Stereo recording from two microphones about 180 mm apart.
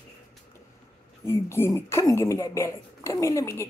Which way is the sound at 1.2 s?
15° left (ahead or behind).